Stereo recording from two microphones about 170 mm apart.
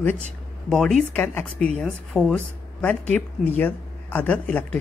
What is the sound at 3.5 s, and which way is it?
Speech, 10° left (ahead or behind).